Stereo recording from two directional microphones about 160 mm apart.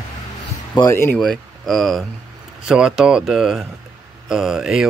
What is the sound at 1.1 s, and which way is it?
Speech, centre (ahead or behind).